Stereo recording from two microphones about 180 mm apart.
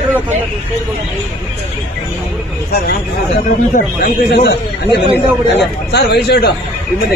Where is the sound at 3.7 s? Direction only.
60° left (ahead or behind).